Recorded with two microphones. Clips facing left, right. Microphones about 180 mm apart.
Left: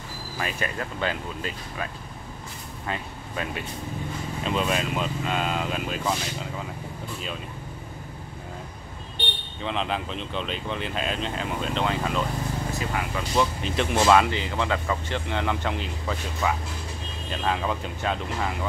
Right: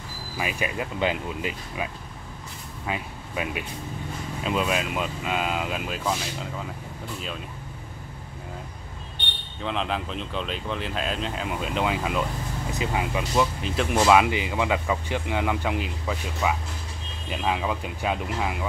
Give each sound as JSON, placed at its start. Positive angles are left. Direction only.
{"t": 0.4, "sound": "speech", "side_deg": -10}
{"t": 2.9, "sound": "speech", "side_deg": -10}
{"t": 9.6, "sound": "speech", "side_deg": 0}
{"t": 12.7, "sound": "speech", "side_deg": -15}
{"t": 13.4, "sound": "speech", "side_deg": 0}